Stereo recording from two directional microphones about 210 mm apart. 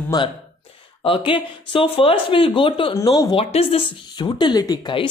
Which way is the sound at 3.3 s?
30° left (ahead or behind).